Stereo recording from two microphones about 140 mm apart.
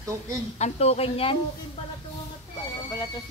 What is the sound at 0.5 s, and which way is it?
Speech, 50° left (ahead or behind).